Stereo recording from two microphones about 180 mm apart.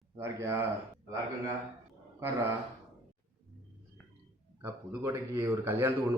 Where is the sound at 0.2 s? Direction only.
15° right (ahead or behind).